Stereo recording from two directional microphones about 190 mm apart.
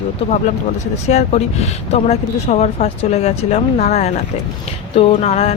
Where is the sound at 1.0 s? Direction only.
35° left (ahead or behind).